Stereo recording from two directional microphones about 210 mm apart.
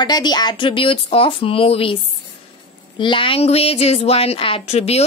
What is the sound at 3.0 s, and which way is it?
Speech, 25° left (ahead or behind).